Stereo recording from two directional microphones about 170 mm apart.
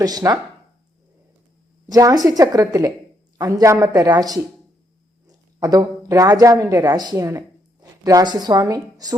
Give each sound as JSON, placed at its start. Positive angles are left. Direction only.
{"t": 0.0, "sound": "a woman's voice", "side_deg": -20}
{"t": 1.9, "sound": "a woman's voice", "side_deg": -20}
{"t": 5.5, "sound": "speech", "side_deg": -20}